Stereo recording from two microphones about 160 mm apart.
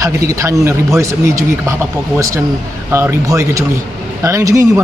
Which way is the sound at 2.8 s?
15° right (ahead or behind).